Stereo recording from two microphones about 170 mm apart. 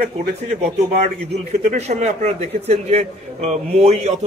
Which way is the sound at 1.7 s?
40° right (ahead or behind).